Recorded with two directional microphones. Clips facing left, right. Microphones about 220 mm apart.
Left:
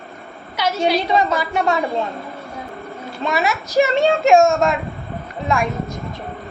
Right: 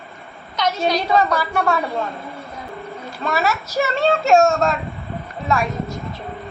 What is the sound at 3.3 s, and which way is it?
Speech, 15° left (ahead or behind).